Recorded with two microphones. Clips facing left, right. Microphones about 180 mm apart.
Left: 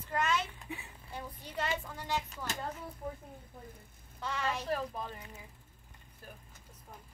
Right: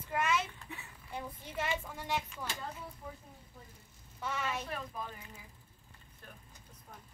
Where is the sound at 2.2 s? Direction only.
45° left (ahead or behind).